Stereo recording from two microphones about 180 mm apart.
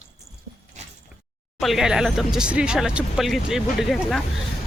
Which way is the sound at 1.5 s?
Centre (ahead or behind).